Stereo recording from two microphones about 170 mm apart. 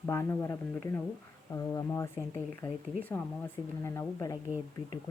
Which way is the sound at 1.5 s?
20° left (ahead or behind).